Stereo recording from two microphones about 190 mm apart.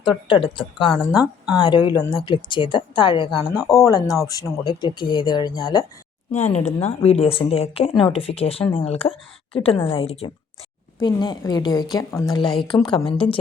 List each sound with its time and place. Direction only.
0.6 s speech: 25° left (ahead or behind)
1.1 s speech: 5° right (ahead or behind)
1.5 s speech: 25° left (ahead or behind)
6.3 s speech: 35° left (ahead or behind)